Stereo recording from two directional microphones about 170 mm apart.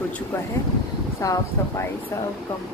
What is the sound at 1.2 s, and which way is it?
Speech, 20° left (ahead or behind).